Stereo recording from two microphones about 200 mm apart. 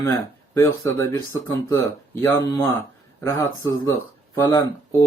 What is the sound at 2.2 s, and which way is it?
Speech, 15° left (ahead or behind).